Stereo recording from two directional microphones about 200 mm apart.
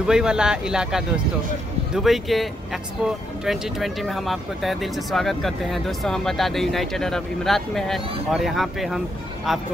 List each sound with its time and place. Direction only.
0.0 s speech: 5° right (ahead or behind)
2.0 s speech: centre (ahead or behind)